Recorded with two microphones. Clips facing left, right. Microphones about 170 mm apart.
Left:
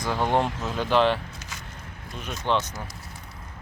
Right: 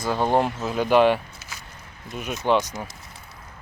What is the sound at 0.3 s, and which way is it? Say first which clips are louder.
Speech: right 3 dB; 5° right (ahead or behind).